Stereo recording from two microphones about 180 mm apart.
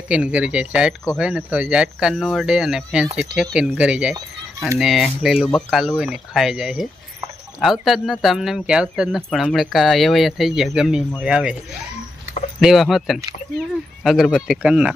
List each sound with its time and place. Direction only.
0.1 s speech: 5° right (ahead or behind)
12.5 s speech: centre (ahead or behind)